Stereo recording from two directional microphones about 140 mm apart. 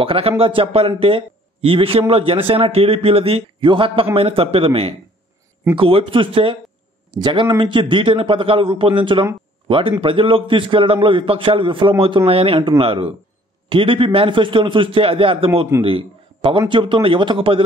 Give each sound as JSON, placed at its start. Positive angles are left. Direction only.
{"t": 0.0, "sound": "a man's voice", "side_deg": -40}